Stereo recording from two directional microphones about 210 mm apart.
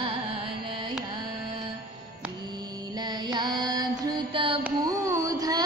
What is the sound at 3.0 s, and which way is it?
Mantra, 20° right (ahead or behind).